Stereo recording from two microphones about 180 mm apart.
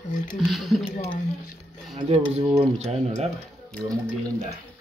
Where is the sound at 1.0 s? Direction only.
45° left (ahead or behind).